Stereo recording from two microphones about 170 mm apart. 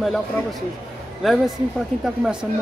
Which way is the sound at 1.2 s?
Centre (ahead or behind).